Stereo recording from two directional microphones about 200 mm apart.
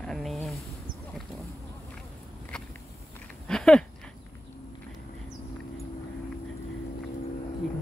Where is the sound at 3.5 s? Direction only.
5° left (ahead or behind).